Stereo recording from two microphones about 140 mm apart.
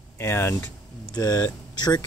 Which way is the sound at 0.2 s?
20° left (ahead or behind).